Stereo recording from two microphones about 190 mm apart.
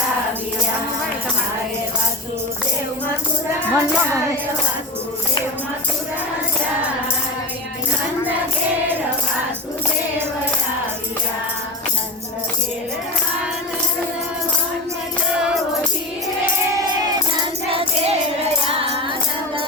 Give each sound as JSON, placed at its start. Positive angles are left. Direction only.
{"t": 3.7, "sound": "speech", "side_deg": -15}
{"t": 17.7, "sound": "music", "side_deg": -30}